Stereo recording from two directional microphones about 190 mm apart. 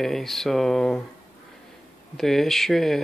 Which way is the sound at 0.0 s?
Centre (ahead or behind).